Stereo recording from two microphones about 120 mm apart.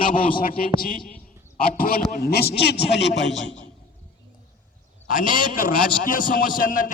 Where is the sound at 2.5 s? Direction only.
55° left (ahead or behind).